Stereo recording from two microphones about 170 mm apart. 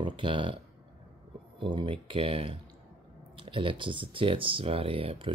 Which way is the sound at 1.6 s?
30° right (ahead or behind).